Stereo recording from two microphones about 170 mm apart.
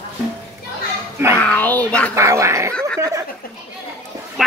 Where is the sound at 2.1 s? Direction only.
15° right (ahead or behind).